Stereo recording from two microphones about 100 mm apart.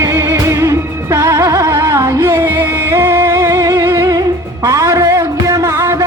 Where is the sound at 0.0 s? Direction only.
25° right (ahead or behind).